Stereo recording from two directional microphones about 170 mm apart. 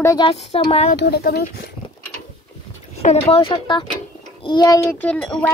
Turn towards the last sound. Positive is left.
turn(degrees=5)  # may be behind; listen again after turning